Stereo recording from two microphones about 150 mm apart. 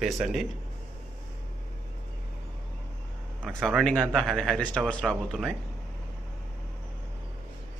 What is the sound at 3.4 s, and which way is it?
Speech, centre (ahead or behind).